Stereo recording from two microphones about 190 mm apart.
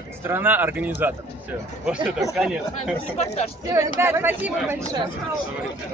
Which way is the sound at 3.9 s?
10° right (ahead or behind).